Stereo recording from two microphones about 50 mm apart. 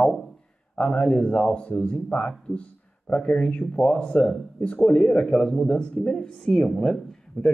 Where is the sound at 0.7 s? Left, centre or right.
Left.